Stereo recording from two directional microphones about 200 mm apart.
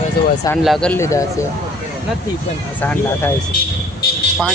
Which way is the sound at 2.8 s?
10° left (ahead or behind).